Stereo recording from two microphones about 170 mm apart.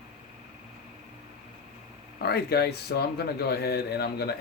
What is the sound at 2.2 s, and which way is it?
Speech, 70° left (ahead or behind).